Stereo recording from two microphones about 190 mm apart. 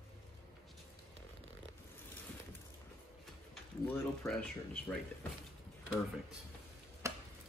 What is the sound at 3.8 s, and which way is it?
Speech, 10° left (ahead or behind).